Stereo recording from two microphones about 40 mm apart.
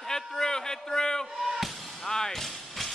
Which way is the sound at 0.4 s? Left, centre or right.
Centre.